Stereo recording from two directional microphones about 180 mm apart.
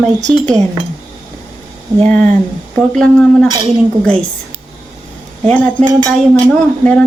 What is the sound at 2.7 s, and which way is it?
Speech, 5° left (ahead or behind).